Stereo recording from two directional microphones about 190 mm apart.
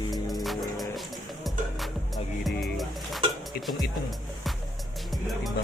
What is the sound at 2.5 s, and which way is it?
Music, centre (ahead or behind).